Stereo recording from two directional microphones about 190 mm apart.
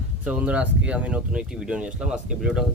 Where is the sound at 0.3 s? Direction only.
5° right (ahead or behind).